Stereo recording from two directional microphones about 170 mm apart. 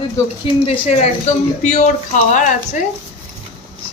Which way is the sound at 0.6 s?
35° left (ahead or behind).